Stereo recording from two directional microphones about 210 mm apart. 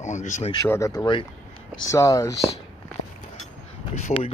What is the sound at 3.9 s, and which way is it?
Speech, 30° left (ahead or behind).